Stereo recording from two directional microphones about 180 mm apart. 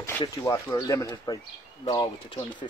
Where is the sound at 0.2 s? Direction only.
20° left (ahead or behind).